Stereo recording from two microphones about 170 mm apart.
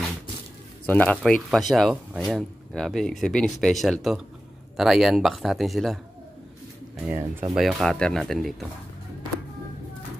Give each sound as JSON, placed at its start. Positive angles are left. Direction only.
{"t": 0.8, "sound": "speech", "side_deg": 10}
{"t": 7.0, "sound": "speech", "side_deg": -10}
{"t": 7.5, "sound": "speech", "side_deg": 0}